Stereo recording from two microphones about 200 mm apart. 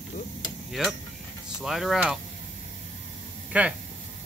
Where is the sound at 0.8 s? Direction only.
Centre (ahead or behind).